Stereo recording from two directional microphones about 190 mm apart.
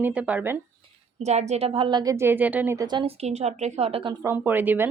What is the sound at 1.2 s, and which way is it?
A woman's voice, 35° right (ahead or behind).